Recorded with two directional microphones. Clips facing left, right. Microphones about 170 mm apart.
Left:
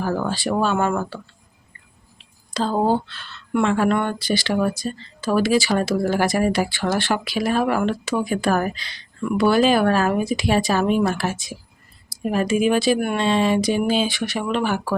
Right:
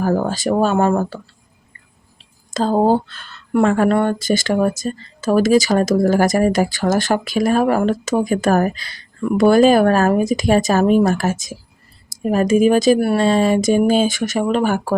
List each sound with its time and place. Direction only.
0.0 s speech: 45° right (ahead or behind)
2.5 s speech: 45° right (ahead or behind)